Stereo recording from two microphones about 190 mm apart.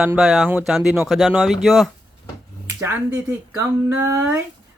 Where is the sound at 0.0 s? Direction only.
5° right (ahead or behind).